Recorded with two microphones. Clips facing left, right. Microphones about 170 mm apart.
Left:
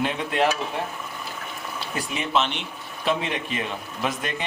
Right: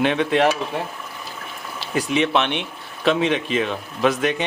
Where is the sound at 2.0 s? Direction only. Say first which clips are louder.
Right 6 dB; 90° right.